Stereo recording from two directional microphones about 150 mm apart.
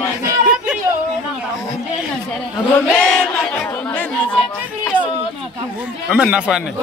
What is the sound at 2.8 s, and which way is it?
Chant, 5° left (ahead or behind).